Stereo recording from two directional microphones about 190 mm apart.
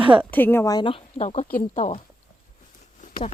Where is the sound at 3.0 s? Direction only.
40° left (ahead or behind).